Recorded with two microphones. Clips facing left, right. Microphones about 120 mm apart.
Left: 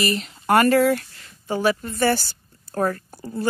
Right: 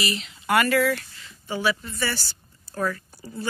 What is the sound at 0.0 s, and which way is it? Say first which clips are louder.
Speech: left 5 dB; 45° left (ahead or behind).